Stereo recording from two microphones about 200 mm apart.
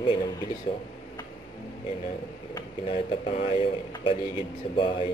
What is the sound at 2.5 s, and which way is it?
Speech, 30° left (ahead or behind).